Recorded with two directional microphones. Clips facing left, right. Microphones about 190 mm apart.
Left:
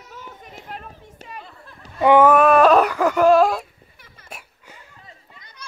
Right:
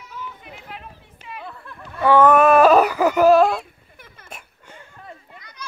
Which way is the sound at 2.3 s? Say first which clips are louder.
Right 1 dB; centre (ahead or behind).